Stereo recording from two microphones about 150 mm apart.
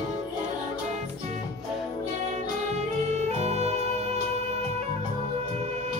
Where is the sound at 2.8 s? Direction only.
50° right (ahead or behind).